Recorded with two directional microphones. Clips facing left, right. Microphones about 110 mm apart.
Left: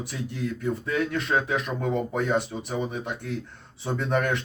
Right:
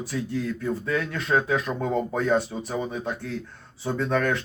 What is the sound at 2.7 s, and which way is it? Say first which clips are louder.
Speech: right 1 dB; 20° left (ahead or behind).